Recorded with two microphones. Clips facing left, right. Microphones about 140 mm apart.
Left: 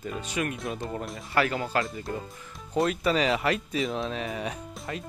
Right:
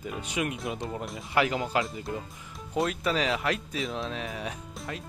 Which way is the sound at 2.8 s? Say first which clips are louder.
Left 3 dB; centre (ahead or behind).